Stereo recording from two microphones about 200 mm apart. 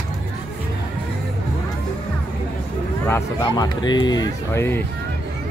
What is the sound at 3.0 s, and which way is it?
Speech, 15° left (ahead or behind).